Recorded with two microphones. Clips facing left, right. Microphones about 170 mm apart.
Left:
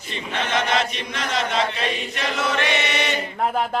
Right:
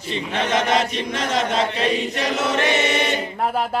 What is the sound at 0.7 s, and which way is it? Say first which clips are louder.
Chant: right 3 dB; 45° right (ahead or behind).